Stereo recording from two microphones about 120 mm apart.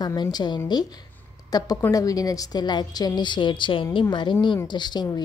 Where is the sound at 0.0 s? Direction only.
35° left (ahead or behind).